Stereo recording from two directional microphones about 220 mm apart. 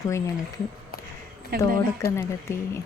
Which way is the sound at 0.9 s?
45° left (ahead or behind).